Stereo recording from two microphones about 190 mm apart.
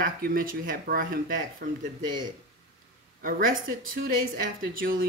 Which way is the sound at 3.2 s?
45° right (ahead or behind).